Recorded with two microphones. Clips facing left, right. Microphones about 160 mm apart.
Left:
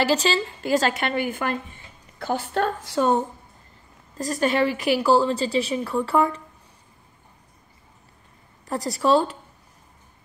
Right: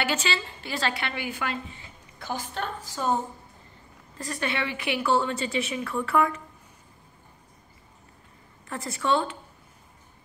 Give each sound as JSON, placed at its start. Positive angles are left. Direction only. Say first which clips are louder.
{"t": 0.0, "sound": "speech", "louder": "left 7 dB", "side_deg": 35}
{"t": 4.2, "sound": "a woman's voice", "louder": "left 9 dB", "side_deg": 40}
{"t": 8.6, "sound": "a woman's voice", "louder": "left 6 dB", "side_deg": 35}